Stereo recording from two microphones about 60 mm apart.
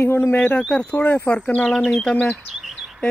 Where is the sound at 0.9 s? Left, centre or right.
Left.